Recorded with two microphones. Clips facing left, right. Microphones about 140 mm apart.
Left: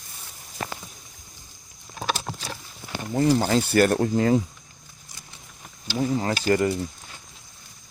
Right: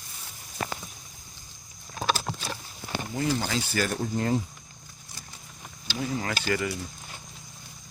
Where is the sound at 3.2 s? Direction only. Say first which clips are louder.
Left 8 dB; 40° left (ahead or behind).